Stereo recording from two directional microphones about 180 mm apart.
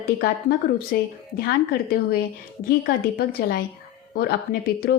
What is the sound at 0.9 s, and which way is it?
A woman's voice, 60° left (ahead or behind).